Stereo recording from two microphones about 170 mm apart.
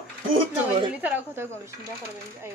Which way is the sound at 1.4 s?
15° right (ahead or behind).